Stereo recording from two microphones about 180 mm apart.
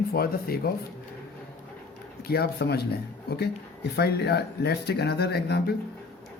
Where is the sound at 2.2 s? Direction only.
60° left (ahead or behind).